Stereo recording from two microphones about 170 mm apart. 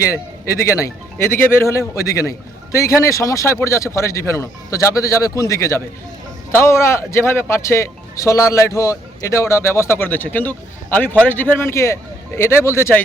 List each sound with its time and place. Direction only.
0.1 s speech: 20° left (ahead or behind)